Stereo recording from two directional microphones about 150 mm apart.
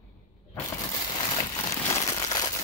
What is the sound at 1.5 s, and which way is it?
Crumpling, 20° left (ahead or behind).